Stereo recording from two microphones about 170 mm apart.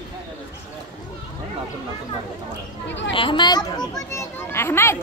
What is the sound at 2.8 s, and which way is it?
Speech, 90° left.